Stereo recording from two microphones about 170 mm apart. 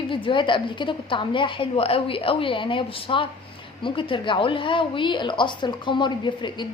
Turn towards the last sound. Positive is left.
turn(degrees=25)  # may be behind; listen again after turning